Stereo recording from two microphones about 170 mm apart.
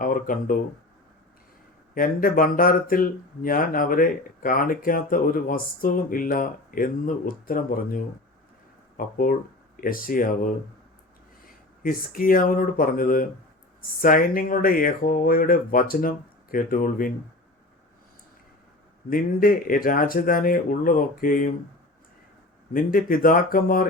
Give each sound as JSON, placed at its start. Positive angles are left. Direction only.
{"t": 0.0, "sound": "speech", "side_deg": 55}
{"t": 2.0, "sound": "speech", "side_deg": 55}
{"t": 11.8, "sound": "speech", "side_deg": 55}
{"t": 19.1, "sound": "speech", "side_deg": 55}
{"t": 22.7, "sound": "speech", "side_deg": 55}